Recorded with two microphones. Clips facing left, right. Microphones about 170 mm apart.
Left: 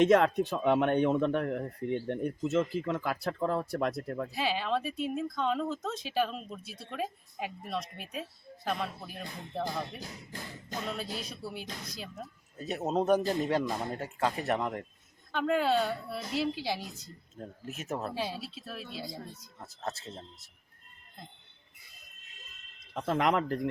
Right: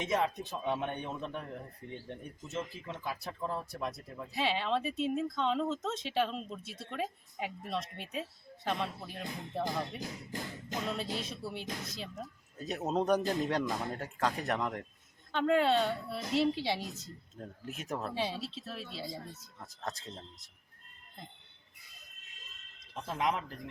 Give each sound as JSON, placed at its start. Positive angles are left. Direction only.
{"t": 0.0, "sound": "speech", "side_deg": 80}
{"t": 4.4, "sound": "a woman's voice", "side_deg": 5}
{"t": 10.8, "sound": "a woman's voice", "side_deg": 0}
{"t": 23.0, "sound": "speech", "side_deg": 70}